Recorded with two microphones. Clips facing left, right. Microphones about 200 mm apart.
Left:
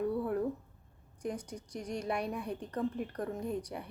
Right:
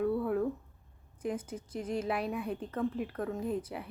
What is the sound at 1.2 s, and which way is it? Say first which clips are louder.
A woman's voice: right 3 dB; 5° right (ahead or behind).